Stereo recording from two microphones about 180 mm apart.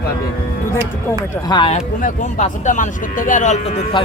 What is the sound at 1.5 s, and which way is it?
Speech, 30° left (ahead or behind).